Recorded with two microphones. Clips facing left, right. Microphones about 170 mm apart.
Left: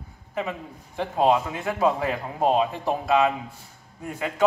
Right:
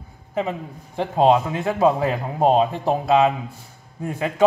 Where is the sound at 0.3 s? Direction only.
30° right (ahead or behind).